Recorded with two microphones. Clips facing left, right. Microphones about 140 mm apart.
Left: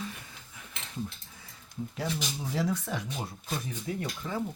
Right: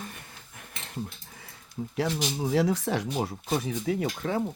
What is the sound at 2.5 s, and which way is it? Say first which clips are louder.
Speech: right 6 dB; 90° right.